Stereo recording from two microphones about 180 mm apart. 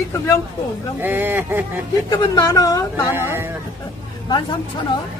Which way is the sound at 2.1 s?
20° left (ahead or behind).